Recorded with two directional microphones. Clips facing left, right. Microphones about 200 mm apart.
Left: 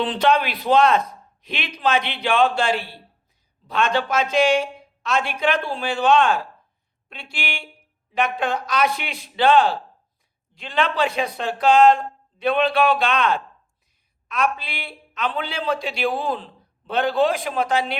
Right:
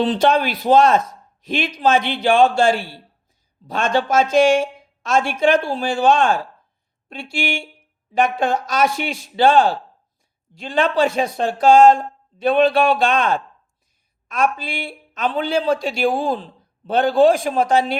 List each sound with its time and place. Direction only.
0.0 s speech: 40° right (ahead or behind)